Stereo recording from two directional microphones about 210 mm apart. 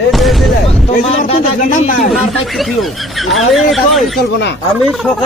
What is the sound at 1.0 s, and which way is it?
Speech, 30° left (ahead or behind).